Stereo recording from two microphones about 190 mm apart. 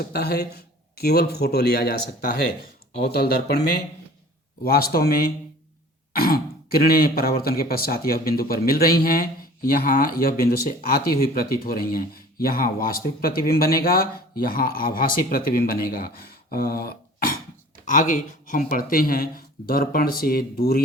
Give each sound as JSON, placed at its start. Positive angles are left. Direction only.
{"t": 0.0, "sound": "a man's voice", "side_deg": 55}
{"t": 6.1, "sound": "speech", "side_deg": 50}